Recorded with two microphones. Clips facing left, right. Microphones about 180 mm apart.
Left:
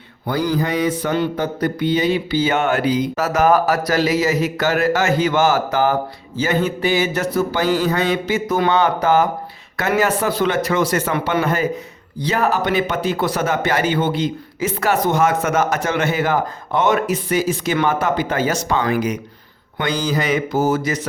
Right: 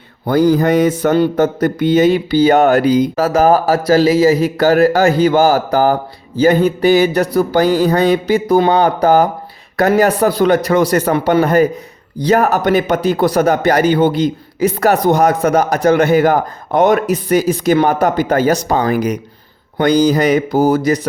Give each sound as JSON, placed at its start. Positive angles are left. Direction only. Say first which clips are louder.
{"t": 0.3, "sound": "mantra", "louder": "right 8 dB", "side_deg": -45}
{"t": 3.2, "sound": "a man's voice", "louder": "right 2 dB", "side_deg": -30}